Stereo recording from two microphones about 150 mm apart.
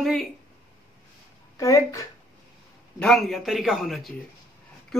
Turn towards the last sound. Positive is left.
turn(degrees=0)  # may be behind; listen again after turning